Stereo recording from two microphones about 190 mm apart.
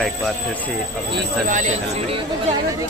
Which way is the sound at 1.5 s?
40° right (ahead or behind).